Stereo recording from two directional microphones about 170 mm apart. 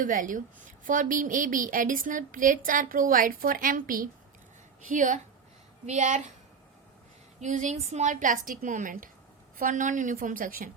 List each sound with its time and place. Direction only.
0.0 s a woman's voice: 50° right (ahead or behind)
7.4 s a woman's voice: 45° right (ahead or behind)